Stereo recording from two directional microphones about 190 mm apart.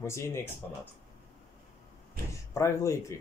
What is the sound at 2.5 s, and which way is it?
Speech, 15° left (ahead or behind).